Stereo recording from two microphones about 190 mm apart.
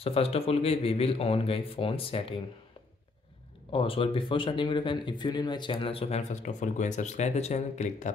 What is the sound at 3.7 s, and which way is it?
Speech, 30° left (ahead or behind).